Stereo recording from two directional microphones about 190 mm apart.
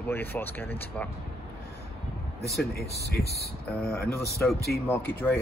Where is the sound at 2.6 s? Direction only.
55° left (ahead or behind).